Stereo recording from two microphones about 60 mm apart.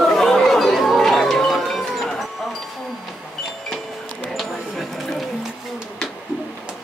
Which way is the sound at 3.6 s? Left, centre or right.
Centre.